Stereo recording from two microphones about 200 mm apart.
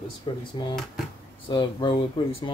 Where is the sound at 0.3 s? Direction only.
25° left (ahead or behind).